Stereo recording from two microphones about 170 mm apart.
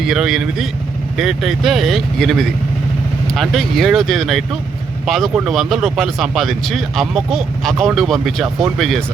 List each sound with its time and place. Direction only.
0.0 s speech: centre (ahead or behind)